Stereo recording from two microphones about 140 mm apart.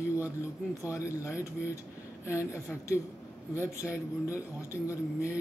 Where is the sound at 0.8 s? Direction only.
20° left (ahead or behind).